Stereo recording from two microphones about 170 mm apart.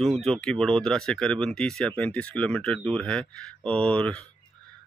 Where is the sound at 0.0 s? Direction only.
Centre (ahead or behind).